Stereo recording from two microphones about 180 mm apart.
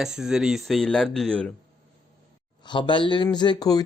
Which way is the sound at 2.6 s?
25° left (ahead or behind).